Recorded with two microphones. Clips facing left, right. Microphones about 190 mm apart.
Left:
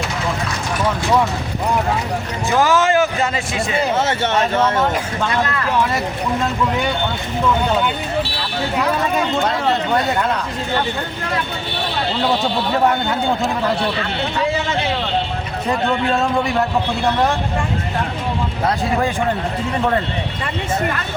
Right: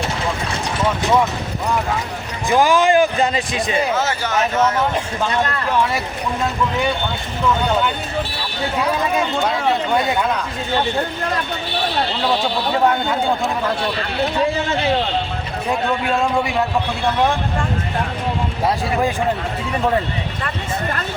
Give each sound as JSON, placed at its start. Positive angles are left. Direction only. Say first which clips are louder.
{"t": 2.5, "sound": "a man's voice", "louder": "right 1 dB", "side_deg": -15}
{"t": 3.9, "sound": "speech", "louder": "left 2 dB", "side_deg": 25}
{"t": 9.1, "sound": "speech", "louder": "left 1 dB", "side_deg": 0}